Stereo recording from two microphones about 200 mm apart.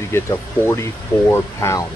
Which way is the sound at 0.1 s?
15° left (ahead or behind).